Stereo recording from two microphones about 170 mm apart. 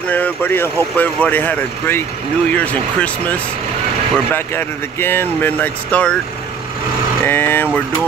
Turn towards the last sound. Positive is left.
turn(degrees=10)  # may be behind; listen again after turning